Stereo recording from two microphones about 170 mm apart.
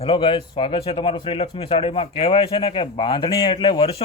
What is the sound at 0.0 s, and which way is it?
Speech, 30° left (ahead or behind).